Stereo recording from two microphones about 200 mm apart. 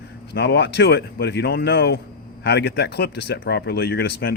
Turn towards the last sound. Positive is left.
turn(degrees=55)  # may be behind; listen again after turning